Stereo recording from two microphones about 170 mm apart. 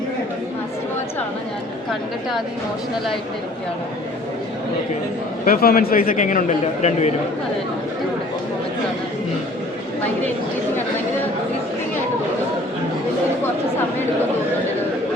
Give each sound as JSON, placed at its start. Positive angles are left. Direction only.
{"t": 5.5, "sound": "a man's voice", "side_deg": 60}